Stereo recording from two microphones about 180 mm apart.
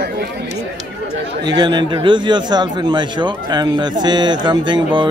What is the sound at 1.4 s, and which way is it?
Speech, 25° right (ahead or behind).